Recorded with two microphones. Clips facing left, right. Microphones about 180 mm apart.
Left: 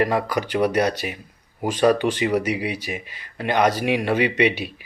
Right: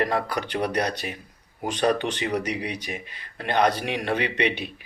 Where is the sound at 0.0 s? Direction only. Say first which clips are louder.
Left 4 dB; 10° left (ahead or behind).